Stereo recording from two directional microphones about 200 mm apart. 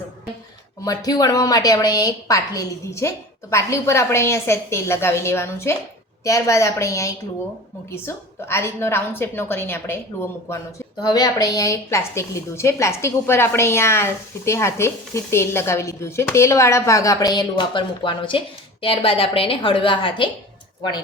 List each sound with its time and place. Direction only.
0.9 s a woman's voice: 20° left (ahead or behind)